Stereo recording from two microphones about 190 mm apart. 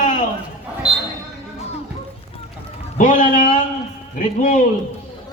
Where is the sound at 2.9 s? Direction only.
45° left (ahead or behind).